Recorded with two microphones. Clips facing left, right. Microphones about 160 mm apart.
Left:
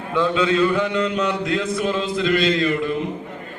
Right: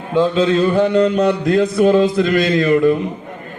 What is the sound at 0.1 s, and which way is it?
Mantra, 35° right (ahead or behind).